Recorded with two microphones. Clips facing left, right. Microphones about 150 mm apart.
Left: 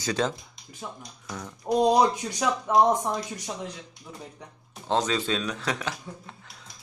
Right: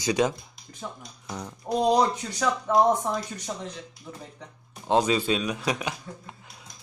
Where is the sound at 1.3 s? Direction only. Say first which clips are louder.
Right 2 dB; 20° right (ahead or behind).